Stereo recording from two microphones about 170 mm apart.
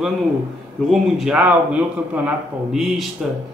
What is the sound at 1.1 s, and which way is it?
A man's voice, 5° right (ahead or behind).